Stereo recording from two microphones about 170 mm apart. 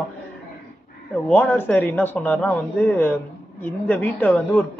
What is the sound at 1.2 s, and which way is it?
Speech, 10° left (ahead or behind).